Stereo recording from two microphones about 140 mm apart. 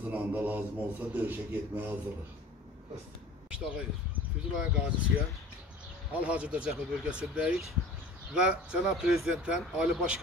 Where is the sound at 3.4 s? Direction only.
10° right (ahead or behind).